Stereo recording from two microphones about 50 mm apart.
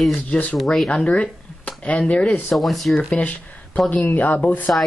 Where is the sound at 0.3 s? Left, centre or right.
Left.